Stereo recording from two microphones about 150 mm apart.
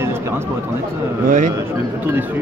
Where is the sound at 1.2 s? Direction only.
55° right (ahead or behind).